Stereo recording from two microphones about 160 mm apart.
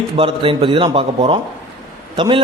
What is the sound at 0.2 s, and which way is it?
A man's voice, 35° right (ahead or behind).